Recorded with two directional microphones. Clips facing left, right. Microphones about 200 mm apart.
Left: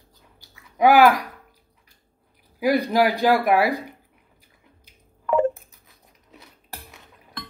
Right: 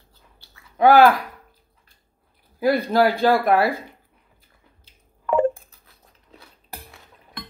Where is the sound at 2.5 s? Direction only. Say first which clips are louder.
Right 1 dB; 15° left (ahead or behind).